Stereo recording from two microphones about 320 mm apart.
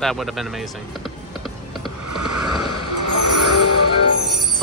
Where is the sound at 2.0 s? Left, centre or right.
Right.